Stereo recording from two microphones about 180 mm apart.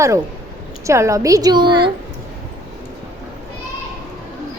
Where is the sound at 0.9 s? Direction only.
15° right (ahead or behind).